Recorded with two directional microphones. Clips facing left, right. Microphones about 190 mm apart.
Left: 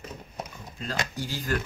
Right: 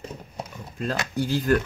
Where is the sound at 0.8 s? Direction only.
60° right (ahead or behind).